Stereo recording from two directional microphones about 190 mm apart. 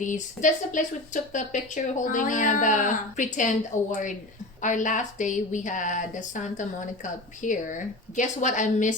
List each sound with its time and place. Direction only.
0.0 s a woman's voice: 40° left (ahead or behind)